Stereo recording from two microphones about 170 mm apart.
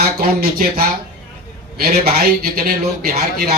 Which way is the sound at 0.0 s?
60° right (ahead or behind).